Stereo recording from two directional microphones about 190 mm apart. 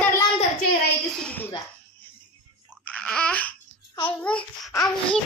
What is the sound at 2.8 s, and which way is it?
Babbling, 5° left (ahead or behind).